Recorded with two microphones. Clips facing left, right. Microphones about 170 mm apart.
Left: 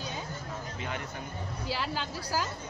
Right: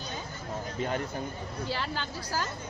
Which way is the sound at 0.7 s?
40° right (ahead or behind).